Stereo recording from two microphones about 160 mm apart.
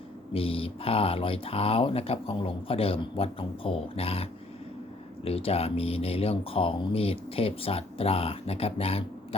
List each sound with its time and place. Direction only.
0.3 s speech: 35° left (ahead or behind)